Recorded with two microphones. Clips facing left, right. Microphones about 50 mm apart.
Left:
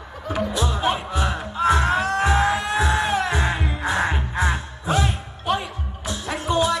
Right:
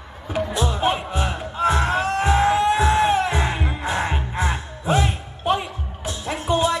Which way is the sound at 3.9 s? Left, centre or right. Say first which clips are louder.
Left 2 dB; left.